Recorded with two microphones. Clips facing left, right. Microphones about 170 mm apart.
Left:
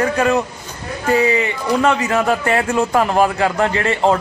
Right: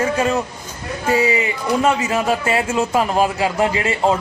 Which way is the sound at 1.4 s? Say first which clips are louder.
Left 1 dB; 20° right (ahead or behind).